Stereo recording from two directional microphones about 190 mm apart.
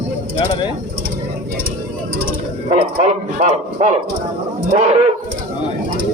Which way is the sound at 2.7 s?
35° right (ahead or behind).